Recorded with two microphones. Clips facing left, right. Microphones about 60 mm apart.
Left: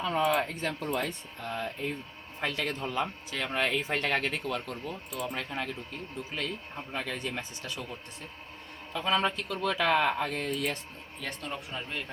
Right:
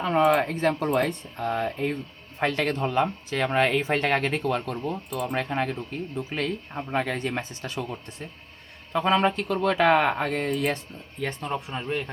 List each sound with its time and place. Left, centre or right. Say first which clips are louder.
0.1 s speech: right 7 dB; right
8.9 s speech: right 7 dB; right
11.2 s speech: right 8 dB; right
11.5 s speech: right 8 dB; right